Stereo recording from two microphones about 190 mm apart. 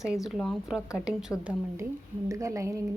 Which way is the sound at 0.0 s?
Centre (ahead or behind).